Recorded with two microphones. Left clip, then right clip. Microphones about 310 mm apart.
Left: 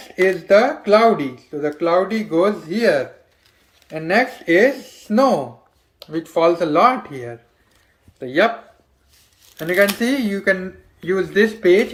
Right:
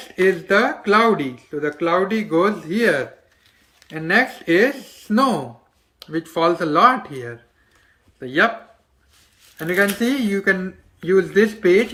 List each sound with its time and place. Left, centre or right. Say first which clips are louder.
0.2 s speech: left 3 dB; centre
9.6 s speech: left 2 dB; centre